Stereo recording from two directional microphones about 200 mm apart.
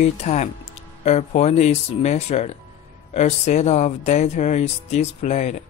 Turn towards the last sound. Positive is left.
turn(degrees=35)  # may be behind; listen again after turning